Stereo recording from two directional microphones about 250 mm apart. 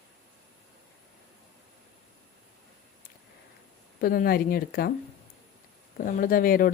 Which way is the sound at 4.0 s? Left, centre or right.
Left.